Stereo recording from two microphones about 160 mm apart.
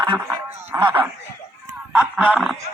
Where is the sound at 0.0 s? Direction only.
15° right (ahead or behind).